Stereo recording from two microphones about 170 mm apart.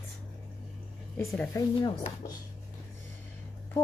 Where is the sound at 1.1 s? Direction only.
15° left (ahead or behind).